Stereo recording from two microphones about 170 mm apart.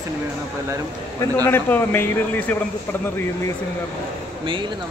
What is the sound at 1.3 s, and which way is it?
Speech, 10° left (ahead or behind).